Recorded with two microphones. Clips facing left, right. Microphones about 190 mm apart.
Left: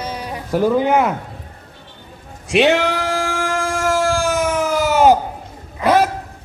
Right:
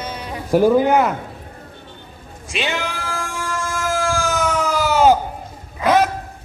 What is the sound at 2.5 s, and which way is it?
Male singing, 70° left (ahead or behind).